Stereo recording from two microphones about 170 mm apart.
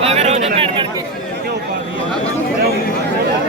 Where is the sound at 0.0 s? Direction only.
40° right (ahead or behind).